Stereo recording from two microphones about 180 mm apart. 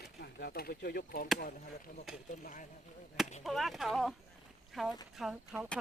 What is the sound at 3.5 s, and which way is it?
Speech, centre (ahead or behind).